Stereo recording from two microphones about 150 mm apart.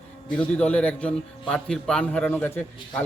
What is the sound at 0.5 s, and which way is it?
A man's voice, 10° left (ahead or behind).